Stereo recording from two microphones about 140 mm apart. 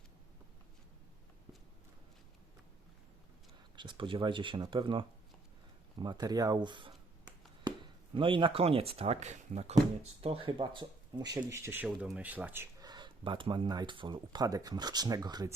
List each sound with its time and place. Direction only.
3.8 s speech: 35° right (ahead or behind)
6.0 s writing: 30° right (ahead or behind)
8.1 s speech: 40° right (ahead or behind)
11.3 s speech: 20° right (ahead or behind)
11.9 s speech: 5° right (ahead or behind)
12.8 s speech: 30° right (ahead or behind)